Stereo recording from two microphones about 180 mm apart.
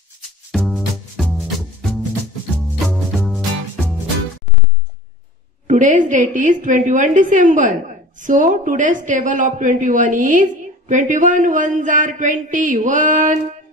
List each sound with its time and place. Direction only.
0.5 s music: centre (ahead or behind)
5.7 s a woman's voice: 45° right (ahead or behind)